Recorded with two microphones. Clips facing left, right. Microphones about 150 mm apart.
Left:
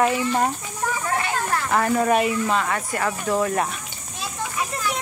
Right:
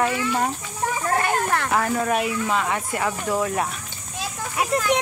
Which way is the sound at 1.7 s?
Centre (ahead or behind).